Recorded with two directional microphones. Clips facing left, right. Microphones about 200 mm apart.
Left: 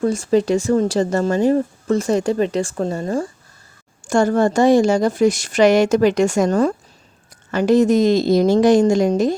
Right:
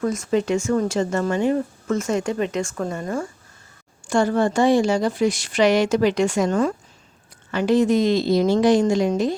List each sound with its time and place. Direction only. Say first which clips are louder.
0.0 s speech: left 5 dB; 30° left (ahead or behind)
4.0 s speech: left 3 dB; 45° left (ahead or behind)